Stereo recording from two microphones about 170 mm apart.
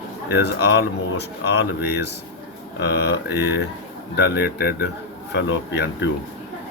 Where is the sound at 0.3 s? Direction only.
70° left (ahead or behind).